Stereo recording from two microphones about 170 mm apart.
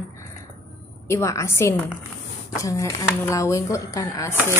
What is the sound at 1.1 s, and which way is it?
A woman's voice, 15° left (ahead or behind).